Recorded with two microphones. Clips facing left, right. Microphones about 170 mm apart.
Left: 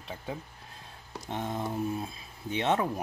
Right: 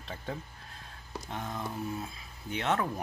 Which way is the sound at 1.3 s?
25° left (ahead or behind).